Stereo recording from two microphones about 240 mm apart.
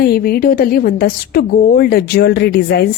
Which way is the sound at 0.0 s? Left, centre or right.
Left.